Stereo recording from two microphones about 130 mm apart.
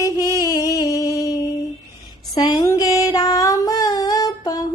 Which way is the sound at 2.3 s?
30° left (ahead or behind).